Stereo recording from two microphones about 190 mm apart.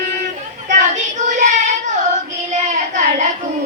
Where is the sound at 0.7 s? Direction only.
40° right (ahead or behind).